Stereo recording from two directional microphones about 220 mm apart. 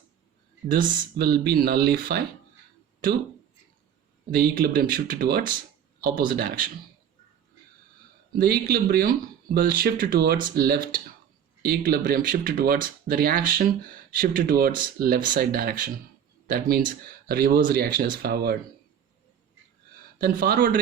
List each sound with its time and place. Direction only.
0.7 s speech: 40° right (ahead or behind)
4.4 s speech: 45° right (ahead or behind)
8.4 s speech: 45° right (ahead or behind)
20.1 s speech: 40° right (ahead or behind)